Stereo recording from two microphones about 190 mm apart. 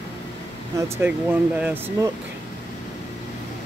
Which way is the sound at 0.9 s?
10° right (ahead or behind).